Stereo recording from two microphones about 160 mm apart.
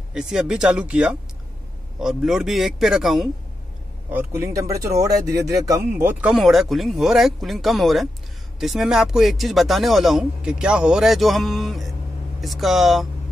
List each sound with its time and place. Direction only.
0.1 s speech: 5° right (ahead or behind)
4.1 s speech: 15° right (ahead or behind)
6.3 s speech: centre (ahead or behind)